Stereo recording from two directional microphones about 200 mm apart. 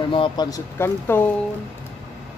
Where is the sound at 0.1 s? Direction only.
25° left (ahead or behind).